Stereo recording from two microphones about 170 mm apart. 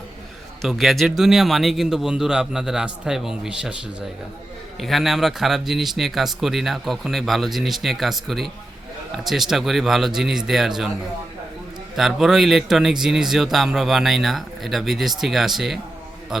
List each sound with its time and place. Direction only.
0.6 s a man's voice: centre (ahead or behind)
4.8 s a man's voice: centre (ahead or behind)
11.9 s a man's voice: centre (ahead or behind)